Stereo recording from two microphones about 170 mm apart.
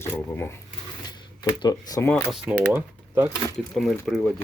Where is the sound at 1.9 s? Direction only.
15° left (ahead or behind).